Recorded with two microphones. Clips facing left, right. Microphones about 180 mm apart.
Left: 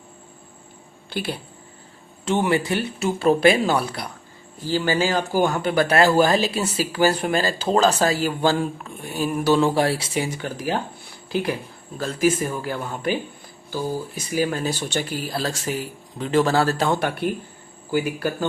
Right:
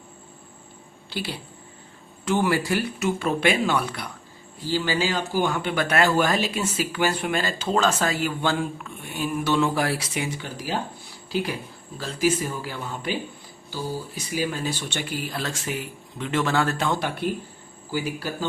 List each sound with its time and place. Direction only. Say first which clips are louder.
1.1 s speech: left 4 dB; 50° left (ahead or behind)
2.2 s speech: left 2 dB; 25° left (ahead or behind)
3.1 s speech: left 7 dB; 35° left (ahead or behind)
4.6 s speech: left 3 dB; 50° left (ahead or behind); by 10.2 s 30° left (ahead or behind)
10.3 s speech: left 5 dB; 50° left (ahead or behind)
11.9 s speech: left 3 dB; 50° left (ahead or behind)
17.9 s speech: left 5 dB; 55° left (ahead or behind)